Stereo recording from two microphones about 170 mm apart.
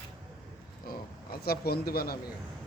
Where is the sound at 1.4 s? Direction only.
65° left (ahead or behind).